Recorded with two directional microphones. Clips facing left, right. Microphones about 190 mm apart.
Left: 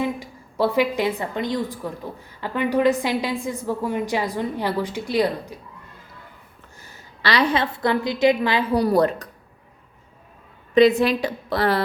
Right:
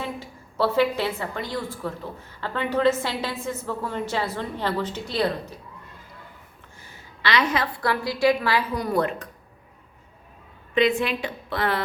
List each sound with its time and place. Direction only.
0.0 s a woman's voice: 15° left (ahead or behind)
6.8 s a woman's voice: 35° left (ahead or behind); by 8.6 s 20° left (ahead or behind)
8.7 s a woman's voice: 35° left (ahead or behind)
10.8 s a woman's voice: 35° left (ahead or behind)